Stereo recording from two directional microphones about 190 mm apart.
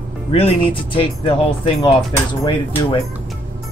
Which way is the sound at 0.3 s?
30° left (ahead or behind).